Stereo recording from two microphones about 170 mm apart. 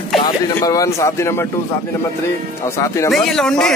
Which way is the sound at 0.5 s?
20° left (ahead or behind).